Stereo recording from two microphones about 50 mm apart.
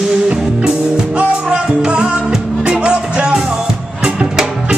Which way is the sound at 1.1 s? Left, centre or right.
Right.